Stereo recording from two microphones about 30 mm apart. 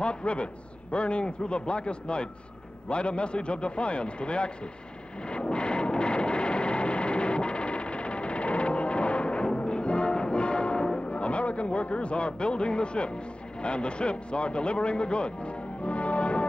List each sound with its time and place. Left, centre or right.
0.0 s a man's voice: left
5.3 s vehicle: left
9.6 s music: left
11.0 s a man's voice: left